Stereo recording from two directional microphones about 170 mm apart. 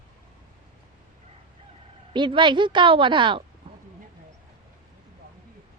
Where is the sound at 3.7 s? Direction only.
35° right (ahead or behind).